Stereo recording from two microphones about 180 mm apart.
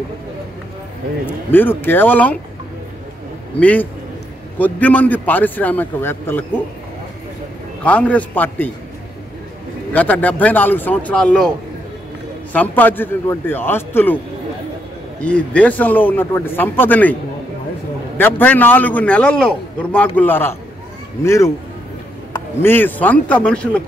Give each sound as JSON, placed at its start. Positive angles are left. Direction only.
{"t": 1.2, "sound": "speech", "side_deg": 10}
{"t": 3.5, "sound": "speech", "side_deg": 5}
{"t": 7.8, "sound": "speech", "side_deg": 5}
{"t": 9.9, "sound": "speech", "side_deg": 10}
{"t": 12.5, "sound": "speech", "side_deg": 10}
{"t": 15.2, "sound": "speech", "side_deg": 5}
{"t": 22.6, "sound": "speech", "side_deg": 10}